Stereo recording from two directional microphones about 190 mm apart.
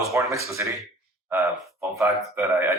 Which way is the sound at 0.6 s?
10° right (ahead or behind).